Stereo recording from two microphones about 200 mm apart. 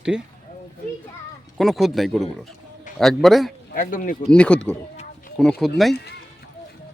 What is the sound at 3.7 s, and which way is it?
Speech, 40° left (ahead or behind).